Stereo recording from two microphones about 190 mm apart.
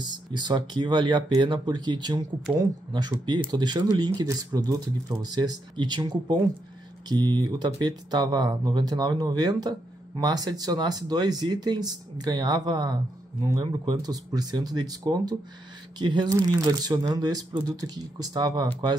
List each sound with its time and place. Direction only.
0.0 s speech: 25° right (ahead or behind)